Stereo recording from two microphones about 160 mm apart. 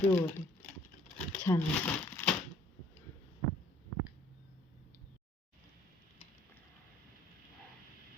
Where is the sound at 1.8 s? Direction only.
10° left (ahead or behind).